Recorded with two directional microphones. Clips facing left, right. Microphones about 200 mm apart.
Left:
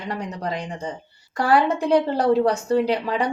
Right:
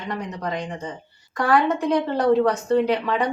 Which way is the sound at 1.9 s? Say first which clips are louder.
Left 1 dB; 30° left (ahead or behind).